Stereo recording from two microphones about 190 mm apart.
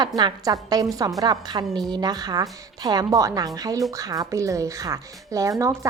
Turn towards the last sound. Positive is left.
turn(degrees=-15)  # may be behind; listen again after turning